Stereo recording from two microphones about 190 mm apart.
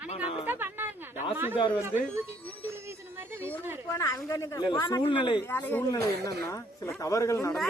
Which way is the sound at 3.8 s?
15° left (ahead or behind).